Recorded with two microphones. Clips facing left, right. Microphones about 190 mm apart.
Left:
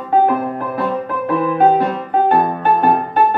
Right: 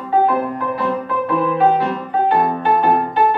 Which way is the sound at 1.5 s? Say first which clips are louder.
Left 3 dB; 45° left (ahead or behind).